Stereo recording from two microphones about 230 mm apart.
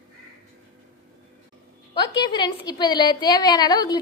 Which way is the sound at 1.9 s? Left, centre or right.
Centre.